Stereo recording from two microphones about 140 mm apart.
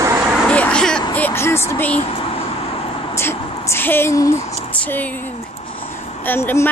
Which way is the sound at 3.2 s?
15° left (ahead or behind).